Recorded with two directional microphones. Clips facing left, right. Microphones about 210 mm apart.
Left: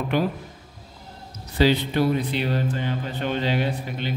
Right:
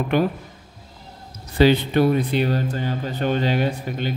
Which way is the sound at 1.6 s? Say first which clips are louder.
Right 4 dB; 55° right (ahead or behind).